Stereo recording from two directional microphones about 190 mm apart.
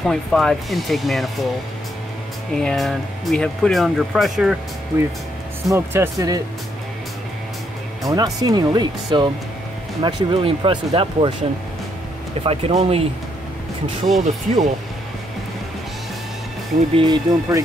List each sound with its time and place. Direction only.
0.0 s speech: centre (ahead or behind)
2.5 s speech: centre (ahead or behind)
5.7 s speech: 15° right (ahead or behind)
8.0 s speech: 20° right (ahead or behind)
12.4 s speech: 30° right (ahead or behind)
14.2 s speech: 40° right (ahead or behind)
16.9 s speech: 25° right (ahead or behind)